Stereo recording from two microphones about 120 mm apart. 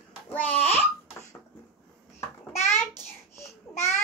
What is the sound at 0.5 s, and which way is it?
Speech, 55° left (ahead or behind).